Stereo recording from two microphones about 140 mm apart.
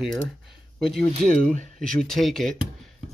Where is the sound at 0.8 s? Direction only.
5° left (ahead or behind).